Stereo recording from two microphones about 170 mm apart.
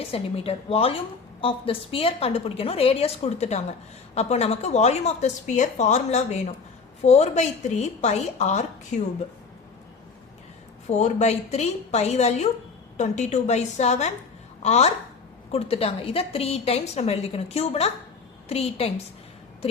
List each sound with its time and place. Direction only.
0.1 s a woman's voice: 35° left (ahead or behind)
10.8 s a woman's voice: 40° left (ahead or behind)